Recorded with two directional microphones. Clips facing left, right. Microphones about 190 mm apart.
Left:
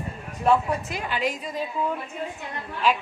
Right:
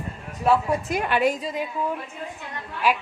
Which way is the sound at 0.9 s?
60° right (ahead or behind).